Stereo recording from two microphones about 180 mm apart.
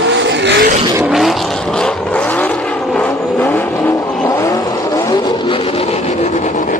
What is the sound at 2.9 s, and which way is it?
Vehicle, 10° left (ahead or behind).